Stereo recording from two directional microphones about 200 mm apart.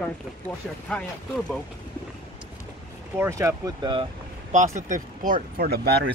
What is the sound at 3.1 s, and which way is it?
Speech, 15° right (ahead or behind).